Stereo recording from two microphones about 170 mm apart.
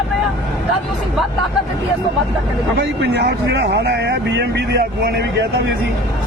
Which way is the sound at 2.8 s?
80° right.